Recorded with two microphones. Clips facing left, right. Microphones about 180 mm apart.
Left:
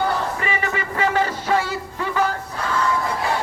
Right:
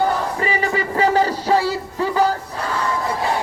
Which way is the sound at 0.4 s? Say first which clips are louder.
Right 4 dB; 35° right (ahead or behind).